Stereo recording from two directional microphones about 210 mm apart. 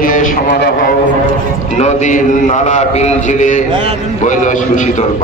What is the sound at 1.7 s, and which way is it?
A man's voice, 35° left (ahead or behind).